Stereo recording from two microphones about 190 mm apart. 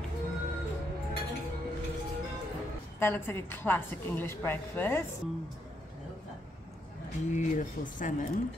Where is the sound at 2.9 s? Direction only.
10° left (ahead or behind).